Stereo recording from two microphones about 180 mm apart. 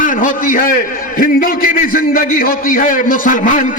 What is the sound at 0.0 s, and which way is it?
A man's voice, 45° left (ahead or behind).